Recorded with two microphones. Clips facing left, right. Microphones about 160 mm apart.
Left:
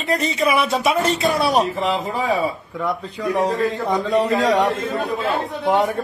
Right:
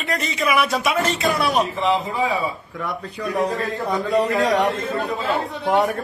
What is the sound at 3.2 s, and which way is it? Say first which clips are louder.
Speech: left 3 dB; 25° left (ahead or behind).